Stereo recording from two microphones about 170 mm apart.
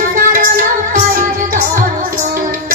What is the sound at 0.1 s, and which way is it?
Music, 55° right (ahead or behind).